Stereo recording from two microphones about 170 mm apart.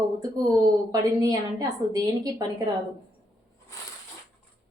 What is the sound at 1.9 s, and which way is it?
Speech, 20° right (ahead or behind).